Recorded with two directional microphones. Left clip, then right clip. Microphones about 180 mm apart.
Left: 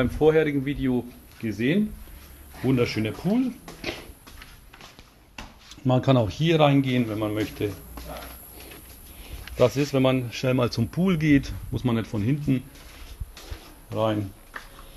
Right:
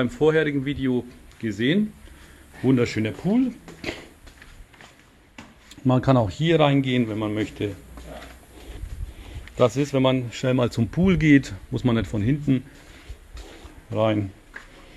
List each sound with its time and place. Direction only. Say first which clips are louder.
0.0 s speech: even; 10° right (ahead or behind)
2.6 s speech: right 2 dB; 25° right (ahead or behind)
5.7 s speech: right 1 dB; 20° right (ahead or behind)
9.6 s speech: right 1 dB; 15° right (ahead or behind)
13.9 s speech: right 3 dB; 30° right (ahead or behind)